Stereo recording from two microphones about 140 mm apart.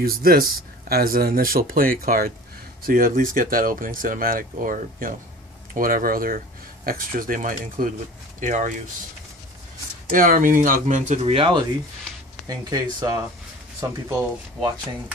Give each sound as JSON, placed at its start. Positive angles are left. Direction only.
{"t": 0.0, "sound": "speech", "side_deg": -90}
{"t": 8.4, "sound": "speech", "side_deg": -65}
{"t": 10.1, "sound": "speech", "side_deg": -75}
{"t": 12.4, "sound": "speech", "side_deg": -30}